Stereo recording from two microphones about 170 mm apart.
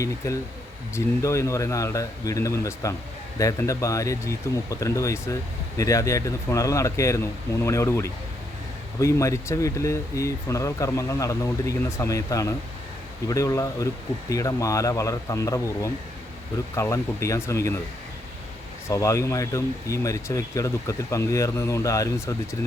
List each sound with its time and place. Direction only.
0.2 s speech: 20° left (ahead or behind)
18.9 s speech: 20° left (ahead or behind)